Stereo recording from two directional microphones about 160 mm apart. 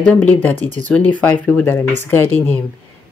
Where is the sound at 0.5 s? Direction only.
50° right (ahead or behind).